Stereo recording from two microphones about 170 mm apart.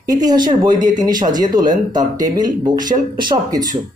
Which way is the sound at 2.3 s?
25° right (ahead or behind).